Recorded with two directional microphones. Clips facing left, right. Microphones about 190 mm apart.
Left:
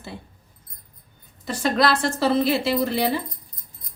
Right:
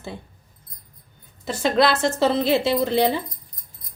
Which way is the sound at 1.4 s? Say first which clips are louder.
Right 2 dB; 25° right (ahead or behind).